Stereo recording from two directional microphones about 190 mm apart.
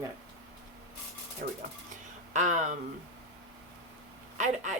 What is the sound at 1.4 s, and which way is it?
Speech, 50° right (ahead or behind).